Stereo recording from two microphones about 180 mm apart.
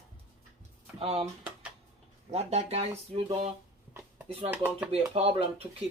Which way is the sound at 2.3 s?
35° right (ahead or behind).